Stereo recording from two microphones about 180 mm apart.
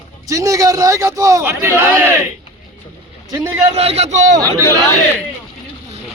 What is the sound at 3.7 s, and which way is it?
Speech, 35° right (ahead or behind).